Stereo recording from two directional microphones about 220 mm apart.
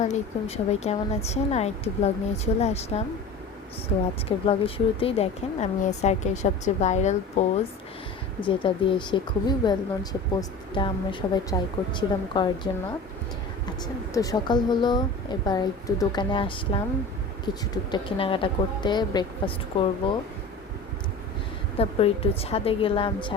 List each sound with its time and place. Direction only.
0.0 s a woman's voice: 30° left (ahead or behind)
4.3 s speech: 25° left (ahead or behind)
8.4 s a woman's voice: 20° left (ahead or behind)
13.8 s a woman's voice: 15° left (ahead or behind)
21.8 s a woman's voice: 25° left (ahead or behind)